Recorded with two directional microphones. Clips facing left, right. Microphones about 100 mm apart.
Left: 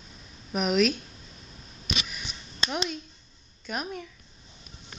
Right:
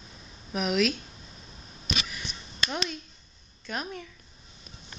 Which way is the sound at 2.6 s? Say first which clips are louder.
Left 1 dB; 25° left (ahead or behind).